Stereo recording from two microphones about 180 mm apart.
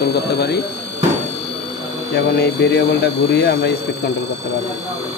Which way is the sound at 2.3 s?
70° left (ahead or behind).